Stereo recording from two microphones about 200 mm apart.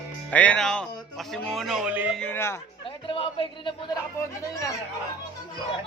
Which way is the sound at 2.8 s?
25° left (ahead or behind).